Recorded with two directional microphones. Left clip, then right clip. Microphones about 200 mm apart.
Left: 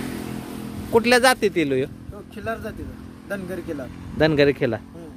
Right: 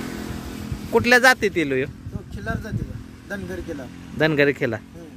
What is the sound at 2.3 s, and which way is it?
Speech, 15° left (ahead or behind).